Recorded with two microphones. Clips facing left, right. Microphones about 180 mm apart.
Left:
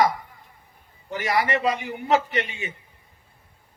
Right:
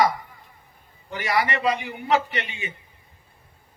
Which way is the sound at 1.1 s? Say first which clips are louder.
Left 1 dB; 45° left (ahead or behind).